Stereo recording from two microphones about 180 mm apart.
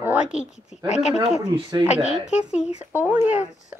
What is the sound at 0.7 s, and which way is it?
Speech, 40° left (ahead or behind).